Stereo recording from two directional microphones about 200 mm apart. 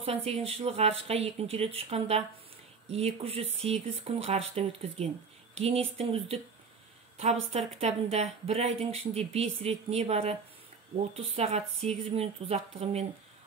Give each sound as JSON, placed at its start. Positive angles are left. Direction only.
{"t": 0.0, "sound": "speech", "side_deg": -30}